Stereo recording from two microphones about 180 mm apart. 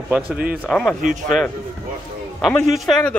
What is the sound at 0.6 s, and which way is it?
Speech, 5° left (ahead or behind).